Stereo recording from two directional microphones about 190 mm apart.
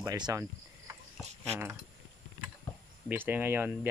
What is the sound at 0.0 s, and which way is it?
Speech, 20° right (ahead or behind).